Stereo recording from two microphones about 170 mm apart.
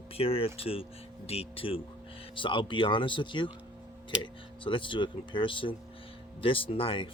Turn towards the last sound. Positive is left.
turn(degrees=30)  # may be behind; listen again after turning